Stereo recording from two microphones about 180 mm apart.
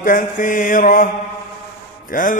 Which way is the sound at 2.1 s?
50° left (ahead or behind).